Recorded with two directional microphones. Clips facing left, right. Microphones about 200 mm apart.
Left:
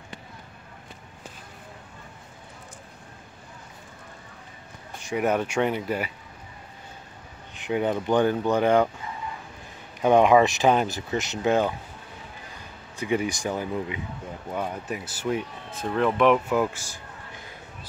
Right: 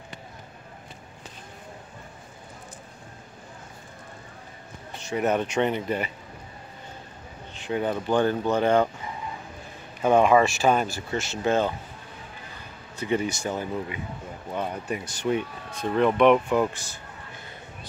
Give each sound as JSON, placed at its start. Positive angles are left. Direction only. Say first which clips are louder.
{"t": 5.0, "sound": "speech", "louder": "even", "side_deg": 10}
{"t": 7.5, "sound": "speech", "louder": "left 2 dB", "side_deg": 15}
{"t": 10.0, "sound": "speech", "louder": "left 1 dB", "side_deg": 15}
{"t": 12.9, "sound": "speech", "louder": "even", "side_deg": 15}
{"t": 14.5, "sound": "speech", "louder": "right 1 dB", "side_deg": 0}